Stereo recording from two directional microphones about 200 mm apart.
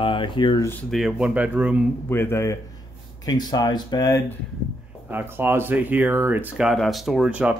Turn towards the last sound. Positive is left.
turn(degrees=-5)  # may be behind; listen again after turning